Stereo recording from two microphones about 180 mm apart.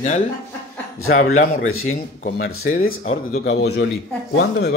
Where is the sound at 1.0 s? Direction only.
50° left (ahead or behind).